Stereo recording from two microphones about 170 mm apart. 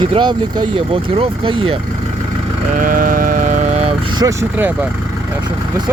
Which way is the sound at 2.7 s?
55° right (ahead or behind).